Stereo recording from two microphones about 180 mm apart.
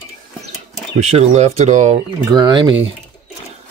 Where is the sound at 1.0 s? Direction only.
35° right (ahead or behind).